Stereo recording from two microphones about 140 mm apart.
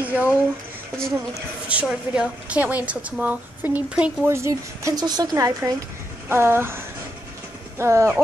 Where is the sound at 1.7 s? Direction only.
5° right (ahead or behind).